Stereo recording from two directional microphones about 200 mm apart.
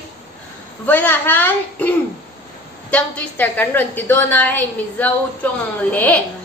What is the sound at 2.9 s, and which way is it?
A woman's voice, 5° left (ahead or behind).